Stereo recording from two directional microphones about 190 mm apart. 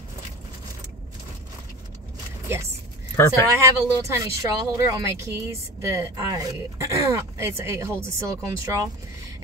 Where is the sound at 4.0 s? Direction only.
15° right (ahead or behind).